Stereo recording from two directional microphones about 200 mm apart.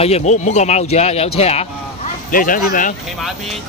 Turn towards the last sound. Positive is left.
turn(degrees=0)  # may be behind; listen again after turning